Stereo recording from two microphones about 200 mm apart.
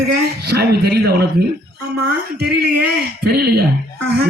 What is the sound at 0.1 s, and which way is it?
A man's voice, 50° right (ahead or behind).